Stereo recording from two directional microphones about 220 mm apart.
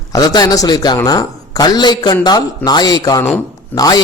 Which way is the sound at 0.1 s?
15° left (ahead or behind).